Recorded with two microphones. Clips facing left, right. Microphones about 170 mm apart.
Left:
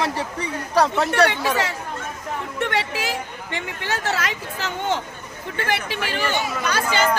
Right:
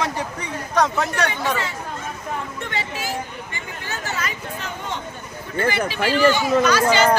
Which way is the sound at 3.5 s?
80° left.